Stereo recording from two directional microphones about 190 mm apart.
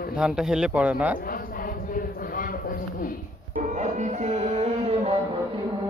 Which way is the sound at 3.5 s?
40° right (ahead or behind).